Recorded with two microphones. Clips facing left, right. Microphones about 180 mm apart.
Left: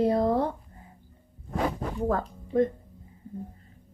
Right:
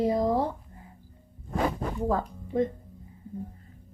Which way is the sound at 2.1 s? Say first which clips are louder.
Even; 55° left (ahead or behind).